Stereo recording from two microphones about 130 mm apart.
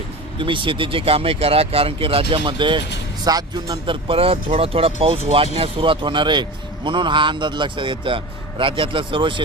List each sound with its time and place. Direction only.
0.3 s speech: 40° right (ahead or behind)
4.1 s a man's voice: 45° right (ahead or behind)